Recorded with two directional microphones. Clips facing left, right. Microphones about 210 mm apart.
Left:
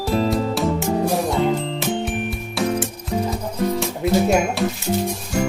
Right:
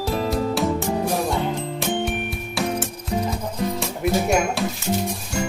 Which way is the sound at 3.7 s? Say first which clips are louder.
Left 3 dB; centre (ahead or behind).